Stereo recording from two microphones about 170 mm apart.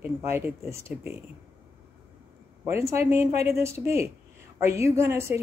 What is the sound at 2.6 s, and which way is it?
Speech, 15° right (ahead or behind).